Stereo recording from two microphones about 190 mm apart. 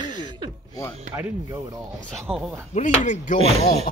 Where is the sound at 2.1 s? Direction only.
Centre (ahead or behind).